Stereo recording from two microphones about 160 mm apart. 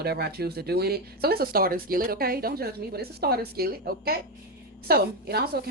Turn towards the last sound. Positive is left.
turn(degrees=-75)  # may be behind; listen again after turning